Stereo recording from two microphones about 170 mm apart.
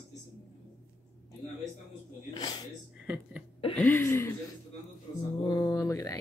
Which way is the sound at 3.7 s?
10° left (ahead or behind).